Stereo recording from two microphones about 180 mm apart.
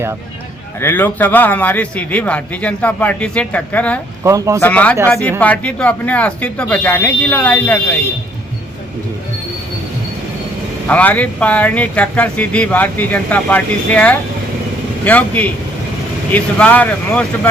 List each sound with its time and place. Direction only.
0.8 s speech: 10° left (ahead or behind)
4.2 s speech: 15° right (ahead or behind)
4.6 s speech: 10° left (ahead or behind)
10.8 s speech: 10° left (ahead or behind)